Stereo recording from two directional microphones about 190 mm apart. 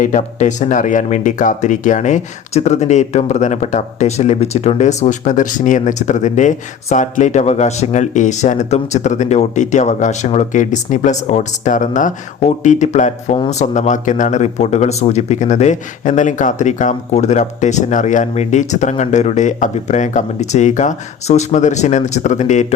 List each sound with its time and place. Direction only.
0.0 s speech: 40° left (ahead or behind)